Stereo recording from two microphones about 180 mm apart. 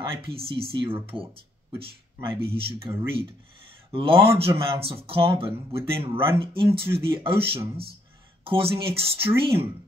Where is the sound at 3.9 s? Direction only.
30° right (ahead or behind).